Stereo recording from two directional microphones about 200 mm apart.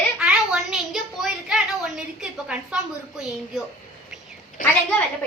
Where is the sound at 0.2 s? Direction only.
5° right (ahead or behind).